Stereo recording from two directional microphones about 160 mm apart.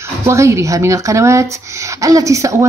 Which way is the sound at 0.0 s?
15° right (ahead or behind).